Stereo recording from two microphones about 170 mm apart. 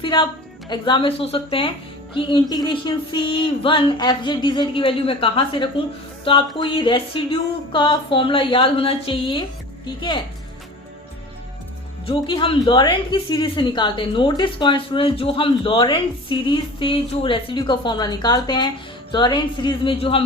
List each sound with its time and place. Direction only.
0.0 s a woman's voice: 30° left (ahead or behind)
12.0 s a woman's voice: 30° left (ahead or behind)